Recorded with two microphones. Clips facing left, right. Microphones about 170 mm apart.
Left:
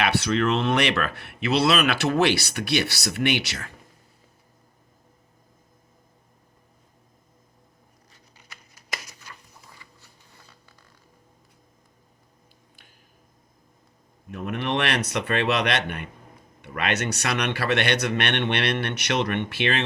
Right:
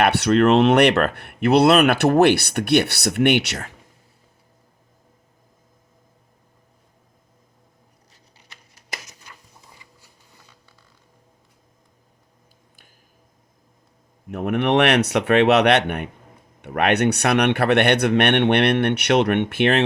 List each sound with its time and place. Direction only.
0.0 s speech: 60° right (ahead or behind)
9.8 s a sound: 20° right (ahead or behind)
14.3 s speech: 60° right (ahead or behind)